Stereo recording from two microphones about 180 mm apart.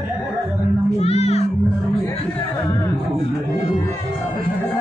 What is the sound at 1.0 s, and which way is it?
Music, 35° left (ahead or behind).